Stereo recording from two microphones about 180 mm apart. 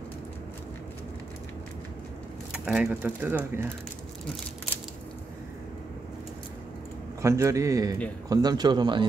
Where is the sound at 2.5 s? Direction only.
5° right (ahead or behind).